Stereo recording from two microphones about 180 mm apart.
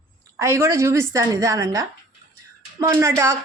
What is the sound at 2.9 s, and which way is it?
Speech, 15° right (ahead or behind).